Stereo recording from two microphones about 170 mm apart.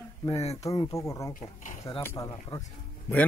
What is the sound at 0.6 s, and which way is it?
A man's voice, 20° left (ahead or behind).